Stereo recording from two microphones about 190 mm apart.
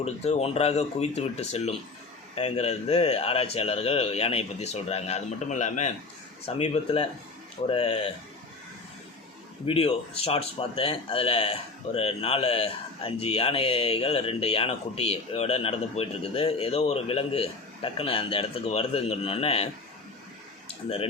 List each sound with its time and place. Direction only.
0.0 s a man's voice: 35° left (ahead or behind)
9.6 s a man's voice: 30° left (ahead or behind)
20.7 s speech: 30° left (ahead or behind)